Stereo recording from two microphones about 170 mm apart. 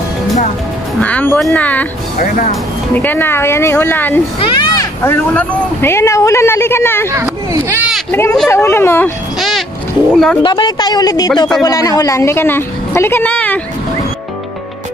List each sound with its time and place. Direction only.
1.0 s a child's voice: 10° left (ahead or behind)
2.9 s a child's voice: 10° left (ahead or behind)
4.4 s a child's voice: 25° left (ahead or behind)
7.1 s speech: 15° right (ahead or behind)
8.1 s a child's voice: 15° left (ahead or behind)
9.4 s a sound: centre (ahead or behind)
10.1 s speech: centre (ahead or behind)
10.4 s a child's voice: 25° left (ahead or behind); by 13.6 s 10° left (ahead or behind)